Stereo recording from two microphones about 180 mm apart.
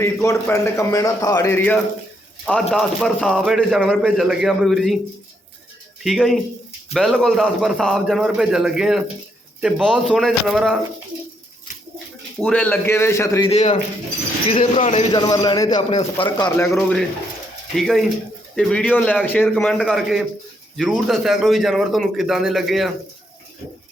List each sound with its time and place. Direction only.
0.0 s a man's voice: 15° left (ahead or behind); by 4.9 s centre (ahead or behind)
6.0 s a man's voice: centre (ahead or behind)
12.4 s a man's voice: 10° left (ahead or behind)
13.5 s a man's voice: 40° left (ahead or behind); by 16.2 s 25° left (ahead or behind)
16.6 s a man's voice: centre (ahead or behind)